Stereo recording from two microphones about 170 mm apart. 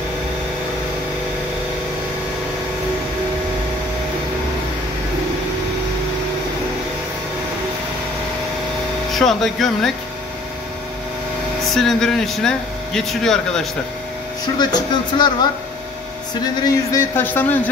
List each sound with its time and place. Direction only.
9.1 s speech: centre (ahead or behind)
11.6 s speech: centre (ahead or behind)
14.4 s speech: 25° left (ahead or behind)
16.6 s a man's voice: 15° left (ahead or behind)